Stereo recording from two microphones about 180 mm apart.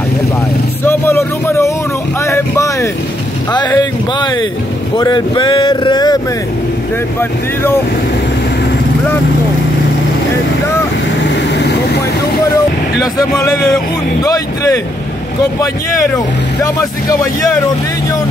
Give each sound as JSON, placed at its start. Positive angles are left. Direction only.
{"t": 0.8, "sound": "a sound", "side_deg": 15}
{"t": 2.2, "sound": "vehicle", "side_deg": 15}
{"t": 3.5, "sound": "speech", "side_deg": 25}
{"t": 11.2, "sound": "vehicle", "side_deg": 70}
{"t": 13.0, "sound": "speech", "side_deg": 20}
{"t": 16.6, "sound": "speech", "side_deg": 20}